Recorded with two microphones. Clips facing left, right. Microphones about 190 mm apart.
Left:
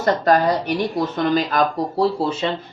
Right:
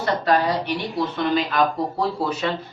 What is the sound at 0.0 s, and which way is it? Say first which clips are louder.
Speech: left 4 dB; 45° left (ahead or behind).